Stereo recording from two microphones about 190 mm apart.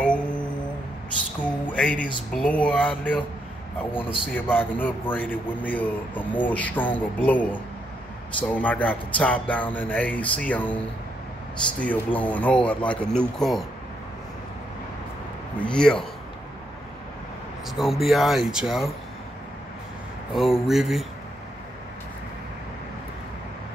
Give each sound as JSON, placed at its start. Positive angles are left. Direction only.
{"t": 0.0, "sound": "a sound", "side_deg": 5}
{"t": 2.3, "sound": "a man's voice", "side_deg": 5}
{"t": 4.3, "sound": "a man's voice", "side_deg": 10}
{"t": 11.8, "sound": "a man's voice", "side_deg": 10}
{"t": 15.5, "sound": "speech", "side_deg": 5}
{"t": 17.6, "sound": "speech", "side_deg": 0}
{"t": 20.3, "sound": "speech", "side_deg": 0}